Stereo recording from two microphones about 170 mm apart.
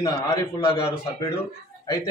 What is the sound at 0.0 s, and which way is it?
Speech, 25° left (ahead or behind).